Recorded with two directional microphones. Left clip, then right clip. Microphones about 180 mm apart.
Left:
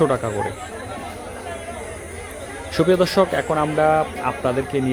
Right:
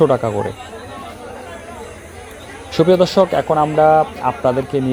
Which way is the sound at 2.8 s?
15° right (ahead or behind).